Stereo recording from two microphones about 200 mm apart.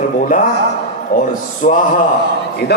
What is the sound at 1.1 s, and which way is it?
Speech, 45° left (ahead or behind).